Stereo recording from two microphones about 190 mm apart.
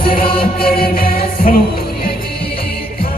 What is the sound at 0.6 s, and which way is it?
Music, 50° left (ahead or behind).